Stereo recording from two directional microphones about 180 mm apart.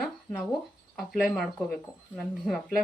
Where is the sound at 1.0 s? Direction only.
Centre (ahead or behind).